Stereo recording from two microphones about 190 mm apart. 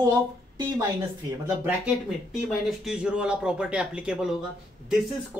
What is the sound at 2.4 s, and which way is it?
Speech, 5° right (ahead or behind).